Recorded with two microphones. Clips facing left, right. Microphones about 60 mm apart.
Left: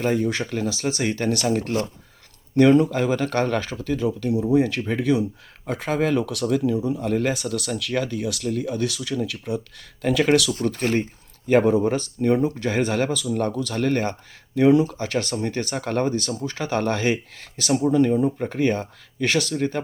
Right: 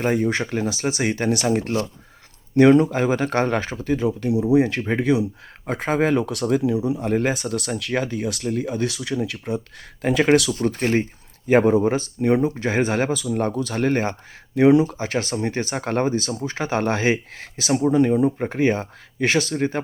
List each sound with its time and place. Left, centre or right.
0.0 s speech: right
7.1 s speech: right